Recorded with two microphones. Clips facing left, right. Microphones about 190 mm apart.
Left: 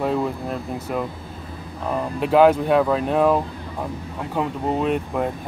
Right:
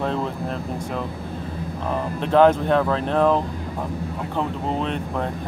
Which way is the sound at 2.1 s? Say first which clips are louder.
Left 1 dB; 10° left (ahead or behind).